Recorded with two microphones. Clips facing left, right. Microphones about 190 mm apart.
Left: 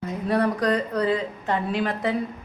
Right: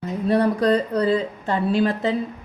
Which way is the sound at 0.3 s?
30° right (ahead or behind).